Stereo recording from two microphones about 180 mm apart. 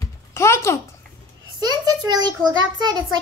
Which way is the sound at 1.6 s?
20° right (ahead or behind).